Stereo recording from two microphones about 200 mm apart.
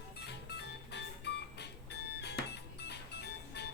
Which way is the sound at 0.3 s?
55° left (ahead or behind).